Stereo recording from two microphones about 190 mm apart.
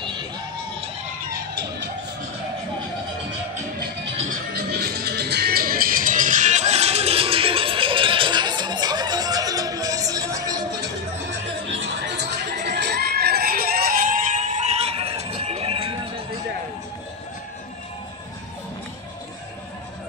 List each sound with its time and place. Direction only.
1.3 s music: 60° right (ahead or behind)
4.3 s music: 55° right (ahead or behind); by 10.2 s 20° right (ahead or behind)
12.3 s crowd: 60° right (ahead or behind); by 16.0 s 30° right (ahead or behind)